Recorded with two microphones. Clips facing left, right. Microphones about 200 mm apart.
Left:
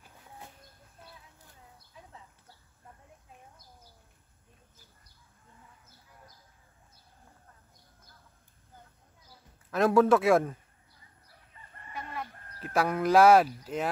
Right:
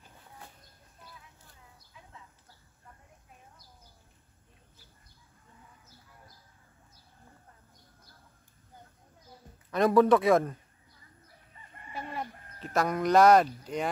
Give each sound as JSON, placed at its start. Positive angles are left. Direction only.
{"t": 9.7, "sound": "speech", "side_deg": 0}
{"t": 11.9, "sound": "chicken", "side_deg": -30}
{"t": 12.5, "sound": "speech", "side_deg": 5}